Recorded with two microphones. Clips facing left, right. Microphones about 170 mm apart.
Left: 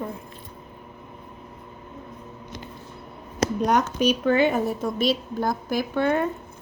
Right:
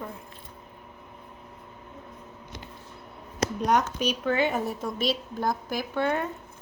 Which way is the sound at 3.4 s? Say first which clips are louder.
Left 3 dB; 50° left (ahead or behind).